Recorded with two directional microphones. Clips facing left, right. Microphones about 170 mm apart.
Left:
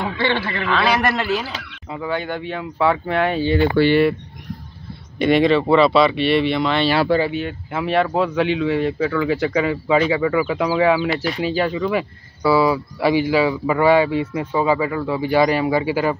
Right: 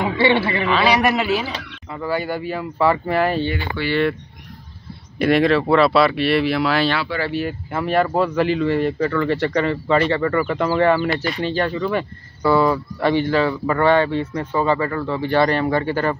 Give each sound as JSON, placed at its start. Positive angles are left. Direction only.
{"t": 0.0, "sound": "speech", "side_deg": -15}
{"t": 3.8, "sound": "speech", "side_deg": 40}
{"t": 5.2, "sound": "speech", "side_deg": 0}